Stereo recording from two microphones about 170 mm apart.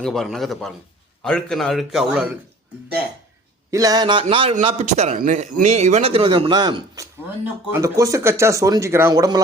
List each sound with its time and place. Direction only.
0.0 s a man's voice: centre (ahead or behind)
3.7 s a man's voice: 20° right (ahead or behind)